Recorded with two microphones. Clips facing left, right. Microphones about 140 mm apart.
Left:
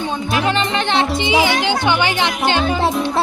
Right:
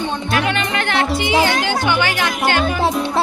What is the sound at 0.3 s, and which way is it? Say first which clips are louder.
Speech: left 2 dB; 30° left (ahead or behind).